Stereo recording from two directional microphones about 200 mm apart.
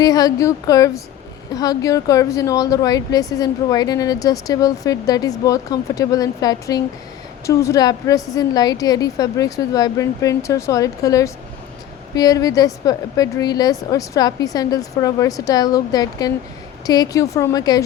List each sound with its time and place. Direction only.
0.0 s a woman's voice: 20° left (ahead or behind)